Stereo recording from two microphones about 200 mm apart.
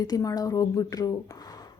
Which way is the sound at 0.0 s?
20° left (ahead or behind).